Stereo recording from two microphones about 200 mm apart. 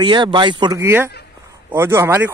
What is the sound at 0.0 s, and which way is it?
Speech, 25° right (ahead or behind).